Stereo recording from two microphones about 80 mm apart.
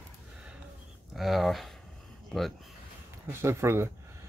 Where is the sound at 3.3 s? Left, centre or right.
Right.